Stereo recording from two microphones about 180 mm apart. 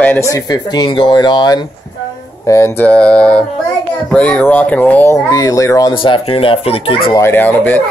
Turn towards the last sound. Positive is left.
turn(degrees=10)  # may be behind; listen again after turning